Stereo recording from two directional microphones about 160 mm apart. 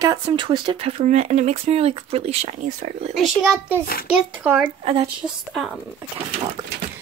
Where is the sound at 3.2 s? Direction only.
5° right (ahead or behind).